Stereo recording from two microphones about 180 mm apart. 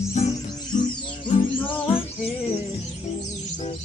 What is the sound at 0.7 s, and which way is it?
Music, 25° left (ahead or behind).